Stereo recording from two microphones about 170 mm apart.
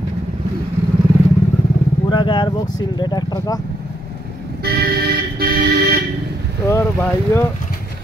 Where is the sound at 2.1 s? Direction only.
25° left (ahead or behind).